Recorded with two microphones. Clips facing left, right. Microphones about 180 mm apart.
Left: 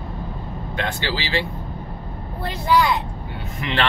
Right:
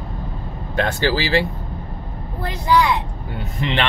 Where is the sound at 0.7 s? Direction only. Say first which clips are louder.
Right 7 dB; 45° right (ahead or behind).